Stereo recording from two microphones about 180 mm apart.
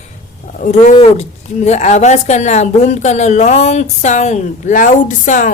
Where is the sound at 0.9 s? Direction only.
35° left (ahead or behind).